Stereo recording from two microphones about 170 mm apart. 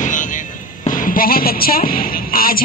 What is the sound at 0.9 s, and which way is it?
Speech, 55° left (ahead or behind).